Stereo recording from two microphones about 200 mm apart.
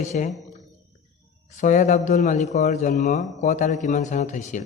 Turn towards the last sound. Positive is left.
turn(degrees=35)  # may be behind; listen again after turning